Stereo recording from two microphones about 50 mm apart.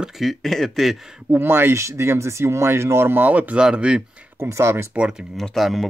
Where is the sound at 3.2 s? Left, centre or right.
Right.